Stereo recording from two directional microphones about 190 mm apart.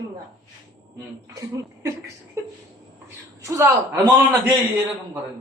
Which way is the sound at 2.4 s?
15° right (ahead or behind).